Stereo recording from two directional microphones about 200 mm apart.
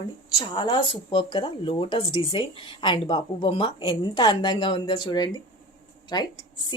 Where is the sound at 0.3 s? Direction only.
20° left (ahead or behind).